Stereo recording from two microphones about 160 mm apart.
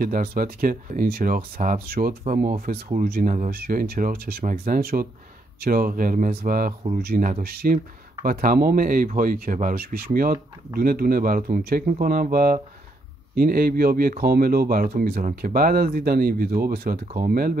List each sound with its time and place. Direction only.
0.0 s speech: 65° right (ahead or behind)